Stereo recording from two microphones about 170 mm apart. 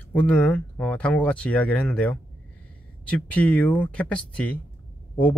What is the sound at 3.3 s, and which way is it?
Speech, 10° left (ahead or behind).